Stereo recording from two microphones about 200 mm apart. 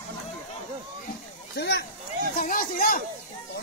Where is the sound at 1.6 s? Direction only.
55° left (ahead or behind).